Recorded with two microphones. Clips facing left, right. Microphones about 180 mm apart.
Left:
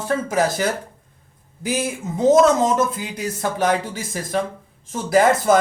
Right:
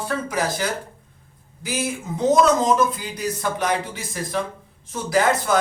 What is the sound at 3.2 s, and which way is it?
Speech, 50° left (ahead or behind).